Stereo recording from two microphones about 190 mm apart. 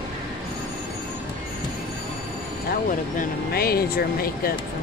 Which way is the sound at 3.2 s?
55° left (ahead or behind).